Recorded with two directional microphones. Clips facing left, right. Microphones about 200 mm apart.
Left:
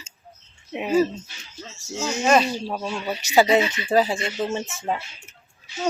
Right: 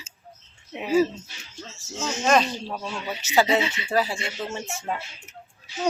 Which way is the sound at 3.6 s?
25° right (ahead or behind).